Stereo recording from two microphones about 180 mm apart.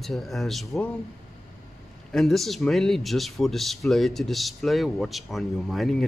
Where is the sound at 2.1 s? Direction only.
Centre (ahead or behind).